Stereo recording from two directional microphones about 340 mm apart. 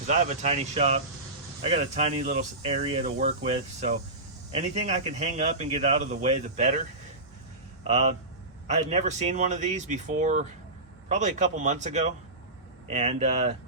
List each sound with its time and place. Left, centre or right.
0.1 s speech: right
7.9 s speech: centre